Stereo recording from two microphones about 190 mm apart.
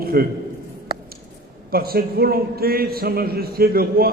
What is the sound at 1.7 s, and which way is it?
A man's voice, 50° right (ahead or behind).